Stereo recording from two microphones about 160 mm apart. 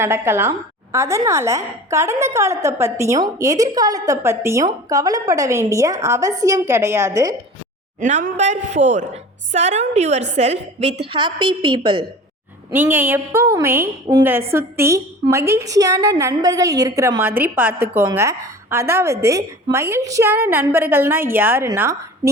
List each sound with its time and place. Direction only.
0.0 s a woman's voice: 15° right (ahead or behind)
8.0 s a woman's voice: 50° right (ahead or behind); by 12.0 s 30° right (ahead or behind)
12.7 s a woman's voice: 10° right (ahead or behind)